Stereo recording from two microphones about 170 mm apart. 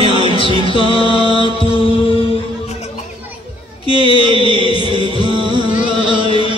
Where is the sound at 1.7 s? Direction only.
30° left (ahead or behind).